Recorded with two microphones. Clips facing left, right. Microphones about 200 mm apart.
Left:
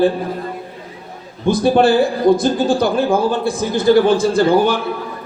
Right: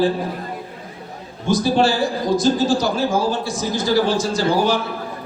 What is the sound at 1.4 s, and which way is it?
A man's voice, 55° left (ahead or behind).